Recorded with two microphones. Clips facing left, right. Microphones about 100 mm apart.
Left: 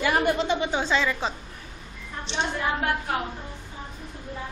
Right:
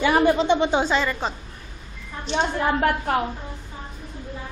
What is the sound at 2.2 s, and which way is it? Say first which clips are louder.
Speech: right 5 dB; 40° right (ahead or behind).